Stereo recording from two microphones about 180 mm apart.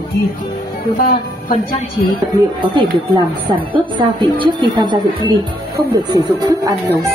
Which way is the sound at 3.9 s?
25° right (ahead or behind).